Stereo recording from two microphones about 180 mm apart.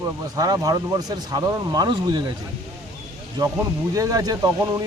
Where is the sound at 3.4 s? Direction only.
25° right (ahead or behind).